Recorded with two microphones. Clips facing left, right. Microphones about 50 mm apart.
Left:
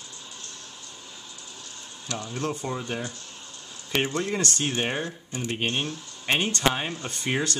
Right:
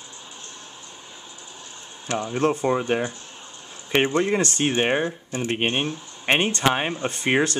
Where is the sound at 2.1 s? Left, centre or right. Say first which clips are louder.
Right 8 dB; right.